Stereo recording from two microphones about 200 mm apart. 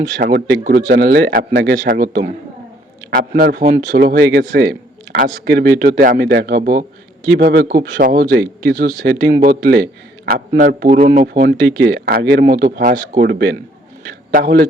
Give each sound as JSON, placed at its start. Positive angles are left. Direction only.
{"t": 0.2, "sound": "speech", "side_deg": -45}
{"t": 9.5, "sound": "speech", "side_deg": -45}
{"t": 10.8, "sound": "speech", "side_deg": -40}